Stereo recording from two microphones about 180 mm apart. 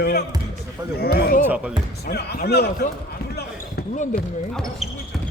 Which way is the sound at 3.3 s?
65° left (ahead or behind).